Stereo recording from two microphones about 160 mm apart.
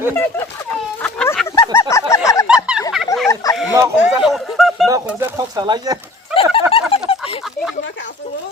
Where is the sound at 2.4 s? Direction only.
5° right (ahead or behind).